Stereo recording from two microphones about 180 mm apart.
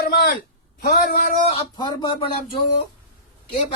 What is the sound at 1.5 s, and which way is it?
Speech, 25° left (ahead or behind).